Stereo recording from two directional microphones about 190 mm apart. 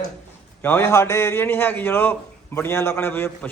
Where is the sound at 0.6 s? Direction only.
15° left (ahead or behind).